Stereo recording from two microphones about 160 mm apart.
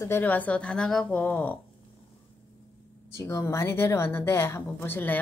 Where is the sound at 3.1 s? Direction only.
20° left (ahead or behind).